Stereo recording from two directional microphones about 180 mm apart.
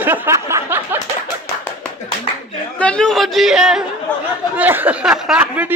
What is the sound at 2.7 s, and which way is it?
Speech, 5° left (ahead or behind).